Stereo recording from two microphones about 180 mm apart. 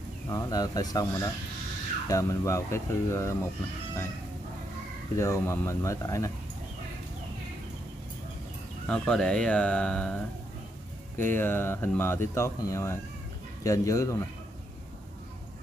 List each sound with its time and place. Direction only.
0.3 s speech: 20° left (ahead or behind)
5.1 s speech: 15° left (ahead or behind)
8.8 s speech: 5° left (ahead or behind)
11.3 s speech: 10° left (ahead or behind)